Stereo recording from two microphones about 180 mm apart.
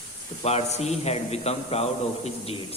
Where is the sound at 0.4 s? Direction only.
35° left (ahead or behind).